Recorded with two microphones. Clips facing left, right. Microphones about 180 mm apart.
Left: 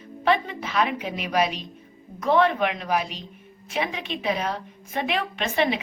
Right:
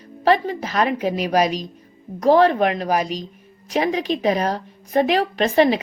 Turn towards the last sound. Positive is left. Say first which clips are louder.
# right 8 dB
turn(degrees=-40)  # may be behind; listen again after turning